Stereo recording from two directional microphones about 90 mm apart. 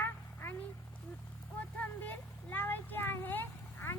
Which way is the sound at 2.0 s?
20° left (ahead or behind).